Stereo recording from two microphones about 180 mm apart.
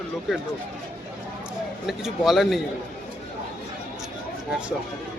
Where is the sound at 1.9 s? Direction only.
Centre (ahead or behind).